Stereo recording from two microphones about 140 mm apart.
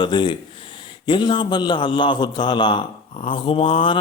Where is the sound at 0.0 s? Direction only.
35° left (ahead or behind).